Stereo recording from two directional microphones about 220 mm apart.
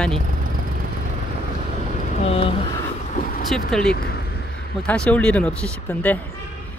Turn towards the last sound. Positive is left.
turn(degrees=5)  # may be behind; listen again after turning